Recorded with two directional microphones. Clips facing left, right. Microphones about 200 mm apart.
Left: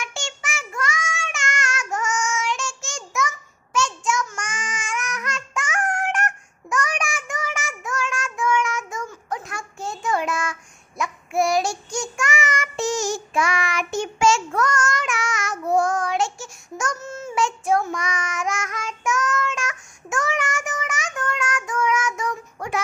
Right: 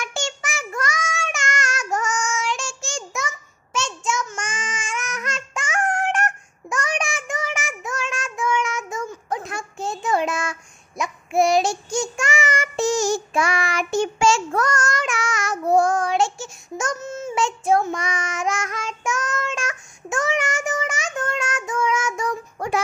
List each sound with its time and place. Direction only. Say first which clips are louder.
0.0 s child singing: right 4 dB; 40° right (ahead or behind)